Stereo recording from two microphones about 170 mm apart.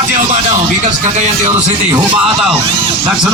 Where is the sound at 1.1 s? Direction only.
40° right (ahead or behind).